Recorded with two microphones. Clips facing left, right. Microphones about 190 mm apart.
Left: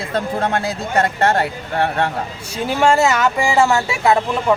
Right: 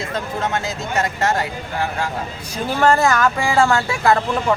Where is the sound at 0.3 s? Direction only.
55° left (ahead or behind).